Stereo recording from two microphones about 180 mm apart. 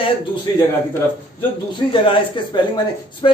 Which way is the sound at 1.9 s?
25° left (ahead or behind).